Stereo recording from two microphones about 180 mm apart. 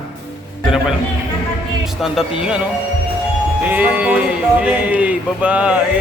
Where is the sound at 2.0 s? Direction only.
5° right (ahead or behind).